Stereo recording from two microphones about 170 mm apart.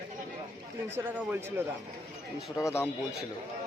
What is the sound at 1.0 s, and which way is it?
Speech, 10° right (ahead or behind).